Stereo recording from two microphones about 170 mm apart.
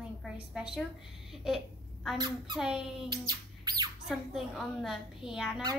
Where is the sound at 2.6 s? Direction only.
5° right (ahead or behind).